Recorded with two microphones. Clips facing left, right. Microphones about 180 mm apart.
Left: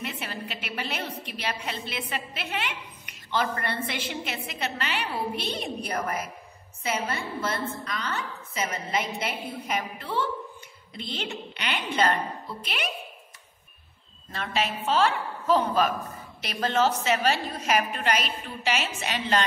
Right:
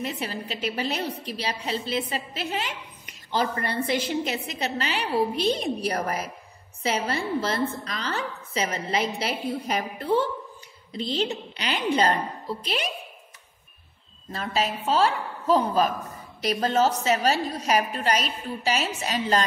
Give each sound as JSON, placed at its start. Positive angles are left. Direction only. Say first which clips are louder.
{"t": 0.0, "sound": "a woman's voice", "louder": "right 4 dB", "side_deg": -40}
{"t": 14.3, "sound": "a woman's voice", "louder": "right 2 dB", "side_deg": -35}